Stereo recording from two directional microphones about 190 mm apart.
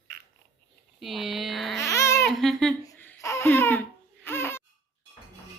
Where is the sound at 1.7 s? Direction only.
15° left (ahead or behind).